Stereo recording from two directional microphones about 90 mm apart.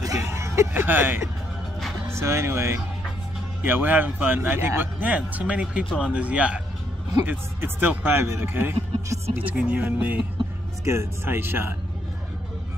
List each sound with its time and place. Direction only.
0.0 s a sound: 35° right (ahead or behind)
0.8 s speech: 20° right (ahead or behind)
10.8 s speech: 30° right (ahead or behind)